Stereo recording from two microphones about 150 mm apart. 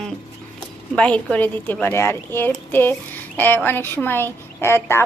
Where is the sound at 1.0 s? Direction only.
10° left (ahead or behind).